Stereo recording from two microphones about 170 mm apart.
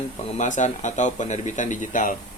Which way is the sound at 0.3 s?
45° left (ahead or behind).